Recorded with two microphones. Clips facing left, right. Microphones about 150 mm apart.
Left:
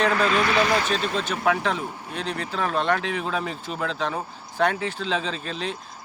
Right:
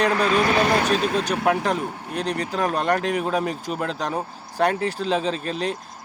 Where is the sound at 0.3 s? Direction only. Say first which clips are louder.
Right 2 dB; 40° right (ahead or behind).